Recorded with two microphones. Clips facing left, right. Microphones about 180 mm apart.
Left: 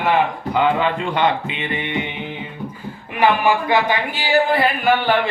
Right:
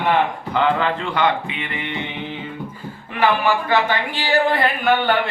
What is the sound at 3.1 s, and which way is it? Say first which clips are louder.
Speech: left 2 dB; 15° left (ahead or behind).